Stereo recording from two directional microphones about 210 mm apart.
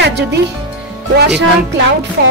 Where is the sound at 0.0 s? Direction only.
55° right (ahead or behind).